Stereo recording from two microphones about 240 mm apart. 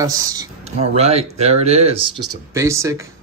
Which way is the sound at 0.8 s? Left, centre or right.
Right.